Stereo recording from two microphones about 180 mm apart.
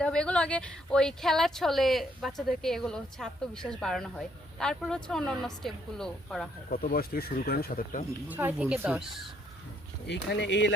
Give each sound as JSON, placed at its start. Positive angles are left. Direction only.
{"t": 0.0, "sound": "speech", "side_deg": 5}
{"t": 6.7, "sound": "speech", "side_deg": 55}
{"t": 8.3, "sound": "speech", "side_deg": -10}
{"t": 10.1, "sound": "speech", "side_deg": 75}